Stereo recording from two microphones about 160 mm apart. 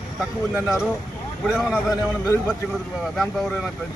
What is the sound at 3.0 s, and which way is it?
Speech, centre (ahead or behind).